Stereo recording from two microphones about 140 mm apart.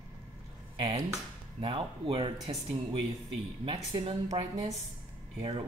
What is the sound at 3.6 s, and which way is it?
A woman's voice, 35° right (ahead or behind).